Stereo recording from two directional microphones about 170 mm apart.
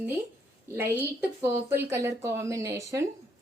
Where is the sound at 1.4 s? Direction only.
15° right (ahead or behind).